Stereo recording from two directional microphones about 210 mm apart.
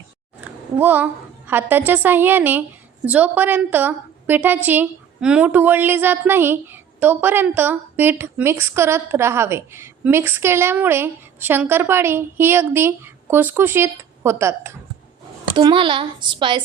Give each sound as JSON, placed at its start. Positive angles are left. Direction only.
{"t": 0.4, "sound": "a woman's voice", "side_deg": -10}
{"t": 15.5, "sound": "speech", "side_deg": -25}